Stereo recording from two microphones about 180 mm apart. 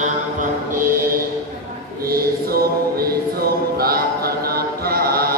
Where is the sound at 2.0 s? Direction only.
55° right (ahead or behind).